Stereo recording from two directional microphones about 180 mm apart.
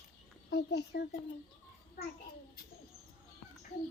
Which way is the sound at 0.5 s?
65° left (ahead or behind).